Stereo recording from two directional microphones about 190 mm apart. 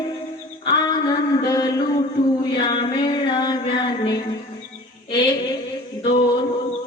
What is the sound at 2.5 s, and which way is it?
Music, 25° left (ahead or behind).